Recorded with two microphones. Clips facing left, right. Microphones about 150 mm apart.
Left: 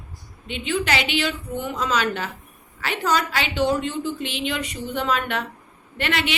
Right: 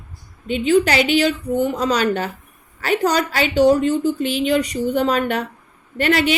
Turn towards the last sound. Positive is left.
turn(degrees=-40)  # may be behind; listen again after turning